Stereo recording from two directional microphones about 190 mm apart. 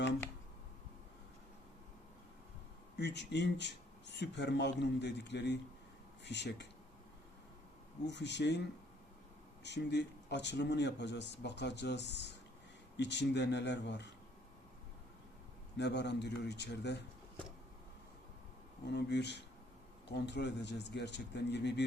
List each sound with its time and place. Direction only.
3.0 s speech: 65° left (ahead or behind)
8.0 s speech: 65° left (ahead or behind)
9.6 s speech: 65° left (ahead or behind)
15.8 s speech: 65° left (ahead or behind)
18.9 s speech: 65° left (ahead or behind)